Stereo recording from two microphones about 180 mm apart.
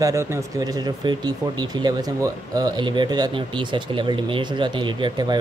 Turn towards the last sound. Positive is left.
turn(degrees=-25)  # may be behind; listen again after turning